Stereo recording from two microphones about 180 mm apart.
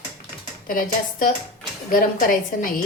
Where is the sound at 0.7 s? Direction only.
50° left (ahead or behind).